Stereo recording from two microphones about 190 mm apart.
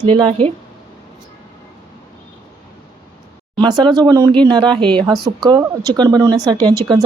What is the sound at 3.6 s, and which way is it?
Speech, 25° right (ahead or behind).